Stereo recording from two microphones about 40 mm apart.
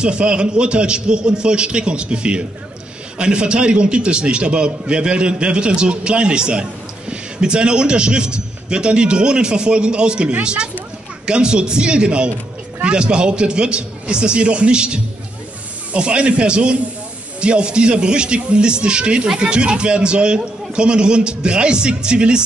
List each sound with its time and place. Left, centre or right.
0.0 s a man's voice: right